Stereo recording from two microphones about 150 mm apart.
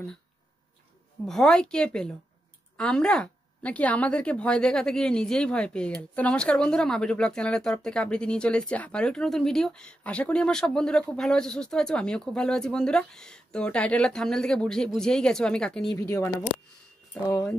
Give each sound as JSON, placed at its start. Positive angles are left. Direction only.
{"t": 1.2, "sound": "speech", "side_deg": 5}
{"t": 15.9, "sound": "speech", "side_deg": 20}